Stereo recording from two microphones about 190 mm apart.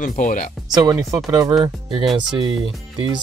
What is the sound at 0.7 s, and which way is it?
Speech, 20° right (ahead or behind).